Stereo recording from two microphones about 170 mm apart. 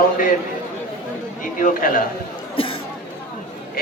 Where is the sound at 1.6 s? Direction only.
50° left (ahead or behind).